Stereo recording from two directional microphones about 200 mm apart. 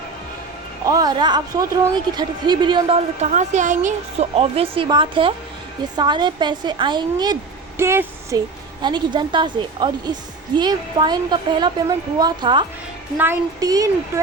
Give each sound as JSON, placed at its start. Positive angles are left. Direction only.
{"t": 0.9, "sound": "a woman's voice", "side_deg": -20}